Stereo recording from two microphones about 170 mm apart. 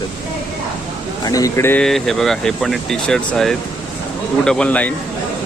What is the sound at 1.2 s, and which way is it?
Speech, 20° left (ahead or behind).